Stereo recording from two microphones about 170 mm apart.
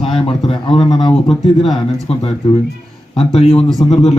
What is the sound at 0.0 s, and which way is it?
A man's voice, 35° left (ahead or behind).